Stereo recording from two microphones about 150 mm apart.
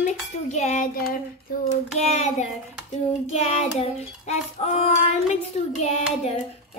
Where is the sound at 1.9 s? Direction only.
50° left (ahead or behind).